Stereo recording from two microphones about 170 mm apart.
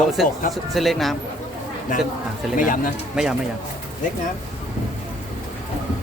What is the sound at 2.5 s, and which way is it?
Speech, 50° left (ahead or behind).